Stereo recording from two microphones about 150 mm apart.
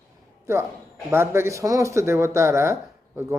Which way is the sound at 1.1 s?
15° right (ahead or behind).